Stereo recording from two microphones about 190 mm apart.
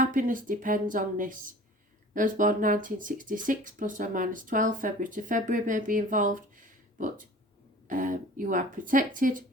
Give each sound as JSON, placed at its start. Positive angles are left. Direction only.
{"t": 0.0, "sound": "speech", "side_deg": -45}